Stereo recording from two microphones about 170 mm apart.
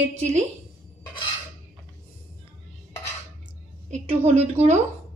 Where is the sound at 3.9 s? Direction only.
40° right (ahead or behind).